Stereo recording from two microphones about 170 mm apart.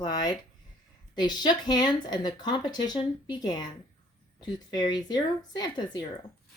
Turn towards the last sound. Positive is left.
turn(degrees=25)  # may be behind; listen again after turning